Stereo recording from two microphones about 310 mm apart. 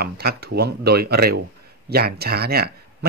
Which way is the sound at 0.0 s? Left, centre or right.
Right.